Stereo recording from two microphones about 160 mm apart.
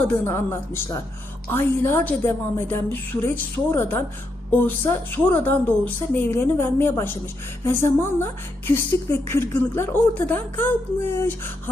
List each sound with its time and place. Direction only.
0.1 s a woman's voice: 15° left (ahead or behind)